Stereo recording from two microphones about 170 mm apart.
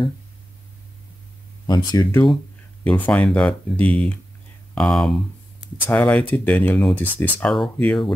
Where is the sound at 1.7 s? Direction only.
25° left (ahead or behind).